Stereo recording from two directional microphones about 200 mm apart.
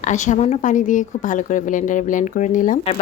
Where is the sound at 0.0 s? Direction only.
35° left (ahead or behind).